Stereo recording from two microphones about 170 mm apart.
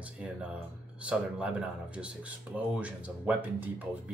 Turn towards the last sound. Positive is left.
turn(degrees=-10)  # may be behind; listen again after turning